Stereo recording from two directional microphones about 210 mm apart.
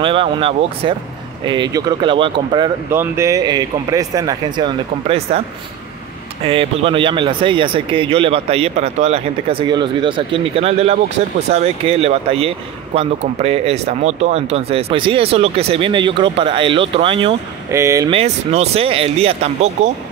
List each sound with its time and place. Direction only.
0.0 s a man's voice: 25° right (ahead or behind)
6.4 s a man's voice: 25° right (ahead or behind)
17.6 s speech: 15° right (ahead or behind)
18.1 s a man's voice: 30° right (ahead or behind)